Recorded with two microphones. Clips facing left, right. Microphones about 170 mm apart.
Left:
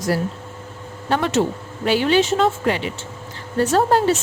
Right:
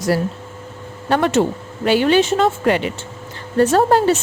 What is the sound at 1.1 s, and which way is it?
Speech, 55° right (ahead or behind).